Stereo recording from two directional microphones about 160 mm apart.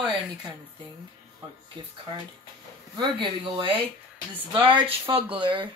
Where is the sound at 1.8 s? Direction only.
30° right (ahead or behind).